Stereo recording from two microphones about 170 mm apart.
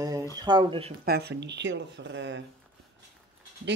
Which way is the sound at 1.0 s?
70° right (ahead or behind).